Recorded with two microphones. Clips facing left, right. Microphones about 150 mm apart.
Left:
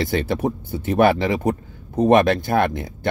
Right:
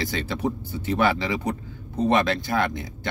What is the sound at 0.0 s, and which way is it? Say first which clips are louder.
Speech: left 5 dB; 55° left (ahead or behind).